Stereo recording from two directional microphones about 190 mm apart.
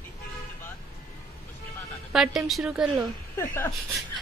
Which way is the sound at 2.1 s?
Centre (ahead or behind).